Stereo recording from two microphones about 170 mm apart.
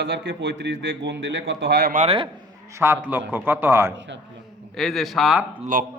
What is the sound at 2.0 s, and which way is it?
Speech, 35° right (ahead or behind).